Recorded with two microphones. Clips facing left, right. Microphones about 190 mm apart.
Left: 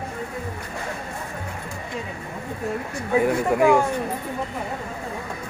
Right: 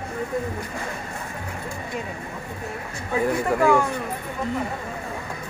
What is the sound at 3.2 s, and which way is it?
Speech, 15° left (ahead or behind).